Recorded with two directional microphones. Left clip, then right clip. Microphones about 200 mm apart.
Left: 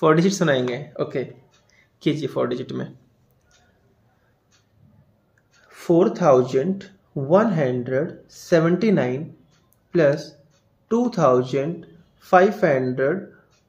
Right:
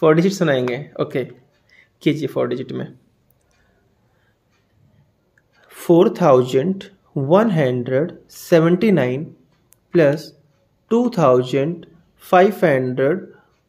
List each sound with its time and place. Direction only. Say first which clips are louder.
0.0 s a man's voice: right 3 dB; 25° right (ahead or behind)
5.7 s speech: right 4 dB; 40° right (ahead or behind)